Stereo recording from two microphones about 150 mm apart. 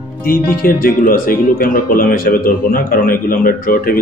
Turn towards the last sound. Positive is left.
turn(degrees=75)  # may be behind; listen again after turning